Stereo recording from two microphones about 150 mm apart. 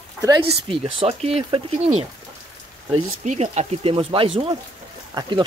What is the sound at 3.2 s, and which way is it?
Speech, 50° right (ahead or behind).